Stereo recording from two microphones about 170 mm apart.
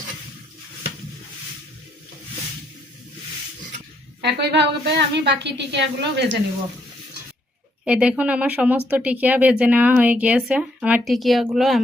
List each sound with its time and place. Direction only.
4.2 s a woman's voice: 80° right
7.9 s speech: 5° right (ahead or behind)